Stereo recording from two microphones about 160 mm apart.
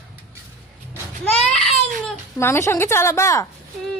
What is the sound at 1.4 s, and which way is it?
Baby cry, 5° left (ahead or behind).